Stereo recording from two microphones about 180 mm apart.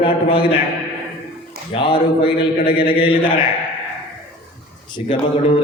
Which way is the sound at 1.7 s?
30° left (ahead or behind).